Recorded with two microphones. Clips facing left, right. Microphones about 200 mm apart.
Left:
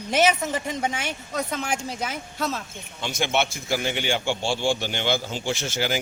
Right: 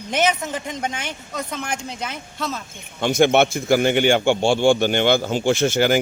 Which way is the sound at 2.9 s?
55° right (ahead or behind).